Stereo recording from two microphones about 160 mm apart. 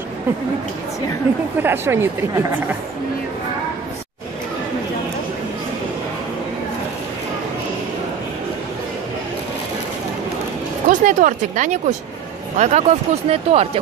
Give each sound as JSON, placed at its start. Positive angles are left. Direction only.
{"t": 1.6, "sound": "speech", "side_deg": -15}
{"t": 10.9, "sound": "speech", "side_deg": -55}